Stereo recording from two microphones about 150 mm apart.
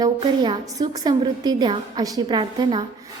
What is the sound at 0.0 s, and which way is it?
A woman's voice, 30° right (ahead or behind).